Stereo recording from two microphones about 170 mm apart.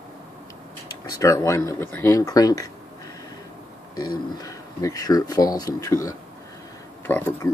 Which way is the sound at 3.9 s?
20° left (ahead or behind).